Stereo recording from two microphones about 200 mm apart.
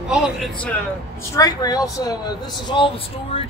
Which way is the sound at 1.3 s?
20° left (ahead or behind).